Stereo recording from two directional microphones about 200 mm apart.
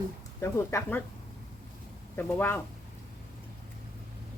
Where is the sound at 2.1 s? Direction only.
10° left (ahead or behind).